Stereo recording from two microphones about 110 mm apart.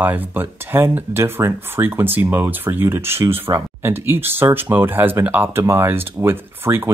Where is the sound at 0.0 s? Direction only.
15° right (ahead or behind).